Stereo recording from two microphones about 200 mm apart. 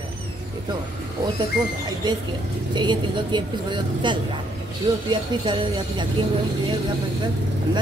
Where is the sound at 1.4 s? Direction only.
20° right (ahead or behind).